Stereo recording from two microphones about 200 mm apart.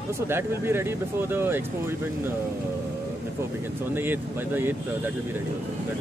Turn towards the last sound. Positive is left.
turn(degrees=-10)  # may be behind; listen again after turning